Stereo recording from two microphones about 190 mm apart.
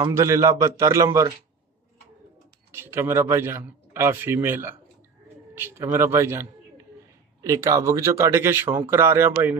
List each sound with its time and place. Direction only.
0.0 s a man's voice: 15° right (ahead or behind)
2.7 s a man's voice: 10° right (ahead or behind)
7.4 s a man's voice: 15° right (ahead or behind)